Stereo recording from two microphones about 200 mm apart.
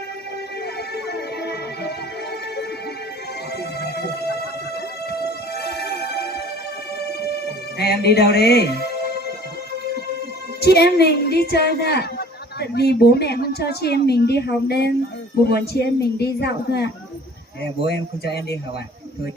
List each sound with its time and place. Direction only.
7.8 s speech: 55° left (ahead or behind)
10.6 s a woman's voice: 55° left (ahead or behind)
17.8 s speech: 55° left (ahead or behind)